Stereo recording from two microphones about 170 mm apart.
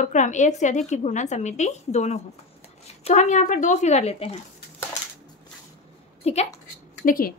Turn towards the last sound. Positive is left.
turn(degrees=60)  # may be behind; listen again after turning